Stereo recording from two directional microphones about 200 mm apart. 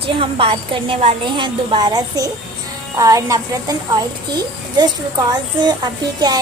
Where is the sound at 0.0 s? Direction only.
25° right (ahead or behind).